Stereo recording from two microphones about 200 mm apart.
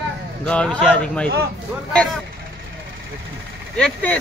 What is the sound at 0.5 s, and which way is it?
Speech, 5° left (ahead or behind).